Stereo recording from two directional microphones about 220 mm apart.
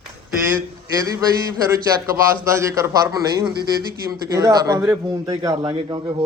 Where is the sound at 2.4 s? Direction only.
15° right (ahead or behind).